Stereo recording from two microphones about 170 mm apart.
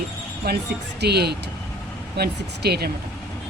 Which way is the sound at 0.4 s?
65° right (ahead or behind).